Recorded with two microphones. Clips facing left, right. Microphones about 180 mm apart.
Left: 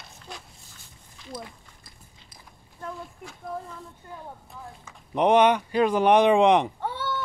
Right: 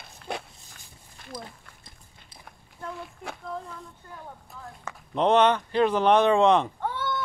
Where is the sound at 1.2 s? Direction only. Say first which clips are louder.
Left 2 dB; 55° right (ahead or behind).